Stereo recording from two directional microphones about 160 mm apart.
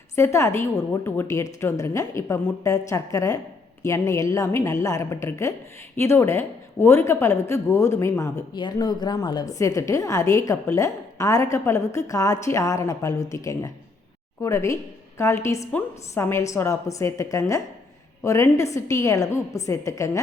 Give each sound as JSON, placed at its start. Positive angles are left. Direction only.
{"t": 0.2, "sound": "a woman's voice", "side_deg": 20}